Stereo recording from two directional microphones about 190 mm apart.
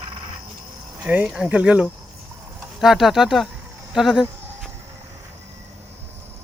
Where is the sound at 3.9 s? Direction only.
5° right (ahead or behind).